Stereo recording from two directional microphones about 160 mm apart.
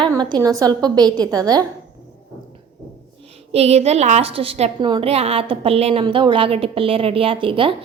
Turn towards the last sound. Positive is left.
turn(degrees=-35)  # may be behind; listen again after turning